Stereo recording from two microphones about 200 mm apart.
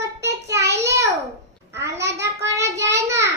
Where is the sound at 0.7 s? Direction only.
15° right (ahead or behind).